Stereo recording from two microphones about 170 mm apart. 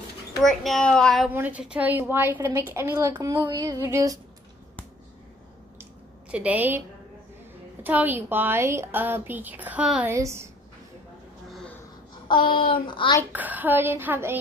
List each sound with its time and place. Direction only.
0.4 s a child's voice: centre (ahead or behind)
1.3 s a woman's voice: 10° right (ahead or behind)
6.3 s a woman's voice: 10° right (ahead or behind)
7.8 s a woman's voice: 10° right (ahead or behind)
12.3 s a sound: 30° left (ahead or behind)
13.3 s a woman's voice: 10° right (ahead or behind)